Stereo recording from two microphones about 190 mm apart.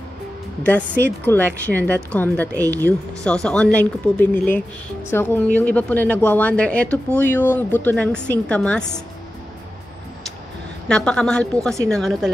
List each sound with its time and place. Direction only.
1.2 s speech: 10° left (ahead or behind)
2.6 s speech: 15° right (ahead or behind)
3.3 s speech: 5° left (ahead or behind)
10.9 s speech: 5° left (ahead or behind)